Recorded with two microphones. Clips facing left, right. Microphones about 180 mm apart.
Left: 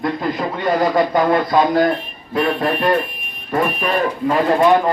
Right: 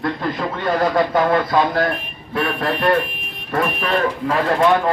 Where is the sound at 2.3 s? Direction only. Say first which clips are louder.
Left 3 dB; 20° left (ahead or behind).